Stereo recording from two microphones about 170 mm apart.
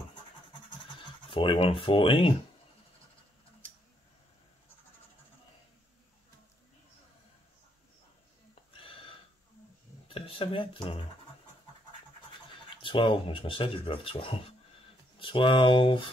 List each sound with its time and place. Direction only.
1.3 s speech: 30° left (ahead or behind)
8.7 s a sound: 30° left (ahead or behind)
10.0 s speech: 35° left (ahead or behind)
12.6 s speech: 30° left (ahead or behind)